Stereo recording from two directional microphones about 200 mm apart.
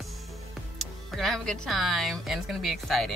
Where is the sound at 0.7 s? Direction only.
Centre (ahead or behind).